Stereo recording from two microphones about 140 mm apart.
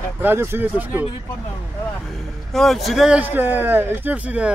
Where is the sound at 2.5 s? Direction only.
Centre (ahead or behind).